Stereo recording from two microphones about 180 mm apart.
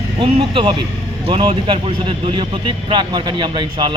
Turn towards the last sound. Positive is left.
turn(degrees=-25)  # may be behind; listen again after turning